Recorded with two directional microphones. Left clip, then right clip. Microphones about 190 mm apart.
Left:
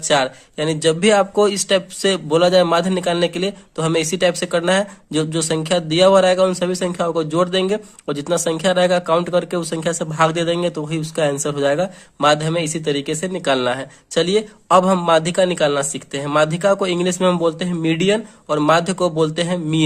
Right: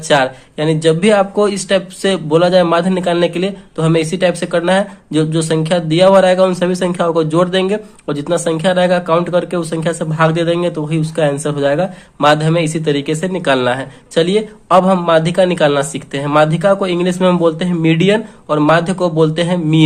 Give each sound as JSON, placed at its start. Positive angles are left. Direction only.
{"t": 0.1, "sound": "speech", "side_deg": 30}